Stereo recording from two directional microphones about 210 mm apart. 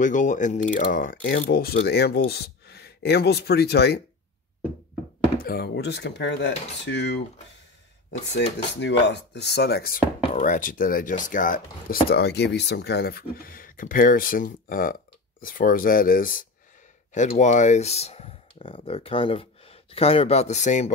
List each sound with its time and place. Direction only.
0.0 s chopping: 35° left (ahead or behind)
5.4 s speech: 45° left (ahead or behind)
8.7 s chopping: 55° left (ahead or behind); by 15.0 s 40° left (ahead or behind)
15.4 s speech: 40° left (ahead or behind)